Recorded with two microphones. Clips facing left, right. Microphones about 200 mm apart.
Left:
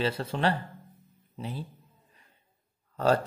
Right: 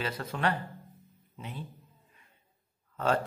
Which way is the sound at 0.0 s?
30° left (ahead or behind).